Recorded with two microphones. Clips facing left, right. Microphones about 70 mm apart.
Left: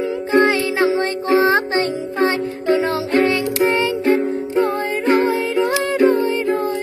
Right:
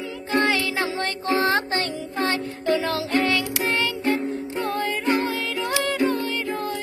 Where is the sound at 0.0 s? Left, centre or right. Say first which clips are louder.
Left 8 dB; left.